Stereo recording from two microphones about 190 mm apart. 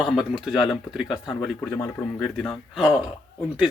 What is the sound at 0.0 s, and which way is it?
Speech, centre (ahead or behind).